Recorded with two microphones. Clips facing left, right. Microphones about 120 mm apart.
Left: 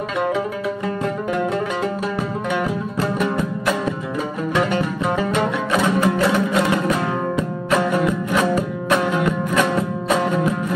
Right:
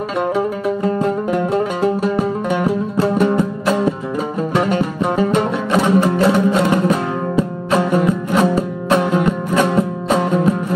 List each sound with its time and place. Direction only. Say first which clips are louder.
2.1 s music: right 4 dB; 35° right (ahead or behind)